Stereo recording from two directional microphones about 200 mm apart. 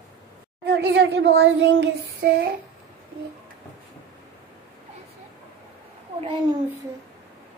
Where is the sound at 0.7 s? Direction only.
60° right (ahead or behind).